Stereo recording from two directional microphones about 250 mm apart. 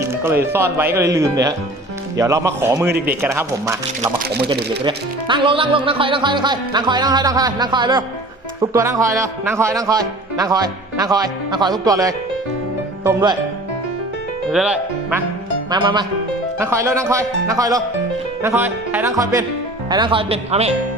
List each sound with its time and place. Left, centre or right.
0.0 s a man's voice: centre
4.9 s a man's voice: centre
14.5 s speech: centre
15.7 s a man's voice: centre